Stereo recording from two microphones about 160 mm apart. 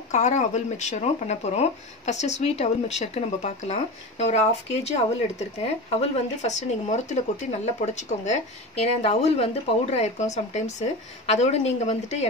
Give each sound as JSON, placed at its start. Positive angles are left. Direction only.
{"t": 0.1, "sound": "speech", "side_deg": 50}